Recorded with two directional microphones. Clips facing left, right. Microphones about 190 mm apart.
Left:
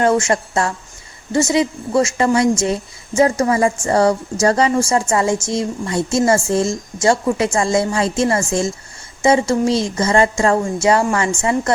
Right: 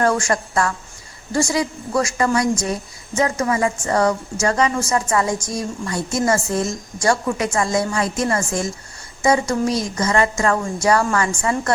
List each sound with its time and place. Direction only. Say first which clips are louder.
0.0 s a woman's voice: left 3 dB; 25° left (ahead or behind)